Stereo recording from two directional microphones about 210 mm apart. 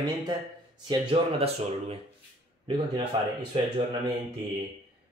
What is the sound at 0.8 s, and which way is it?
Speech, 25° right (ahead or behind).